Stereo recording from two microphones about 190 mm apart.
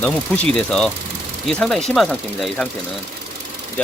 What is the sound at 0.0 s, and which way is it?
Speech, 5° left (ahead or behind).